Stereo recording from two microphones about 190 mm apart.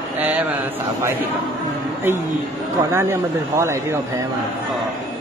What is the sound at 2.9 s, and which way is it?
Speech, 15° right (ahead or behind).